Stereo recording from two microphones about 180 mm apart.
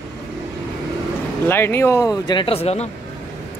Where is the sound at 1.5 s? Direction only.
10° left (ahead or behind); by 2.9 s 35° left (ahead or behind).